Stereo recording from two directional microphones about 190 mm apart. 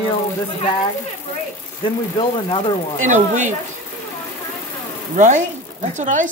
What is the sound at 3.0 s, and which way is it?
Speech, 40° right (ahead or behind).